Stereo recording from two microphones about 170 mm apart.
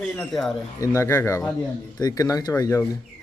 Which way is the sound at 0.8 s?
15° left (ahead or behind).